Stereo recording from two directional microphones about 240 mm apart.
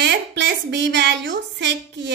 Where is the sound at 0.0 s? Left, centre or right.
Right.